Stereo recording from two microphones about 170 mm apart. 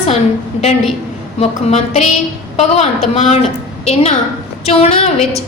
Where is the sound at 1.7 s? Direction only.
40° left (ahead or behind).